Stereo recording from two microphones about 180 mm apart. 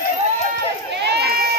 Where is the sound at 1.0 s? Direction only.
65° right (ahead or behind).